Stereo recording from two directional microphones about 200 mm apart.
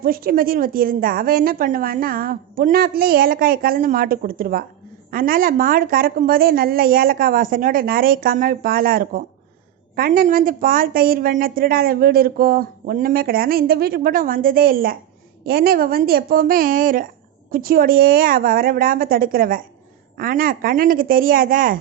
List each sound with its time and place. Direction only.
0.0 s a woman's voice: 45° right (ahead or behind)